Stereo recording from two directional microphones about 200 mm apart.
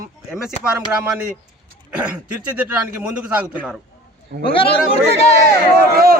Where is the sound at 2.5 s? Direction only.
5° right (ahead or behind).